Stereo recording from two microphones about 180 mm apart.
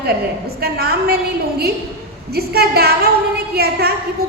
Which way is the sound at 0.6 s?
60° right (ahead or behind).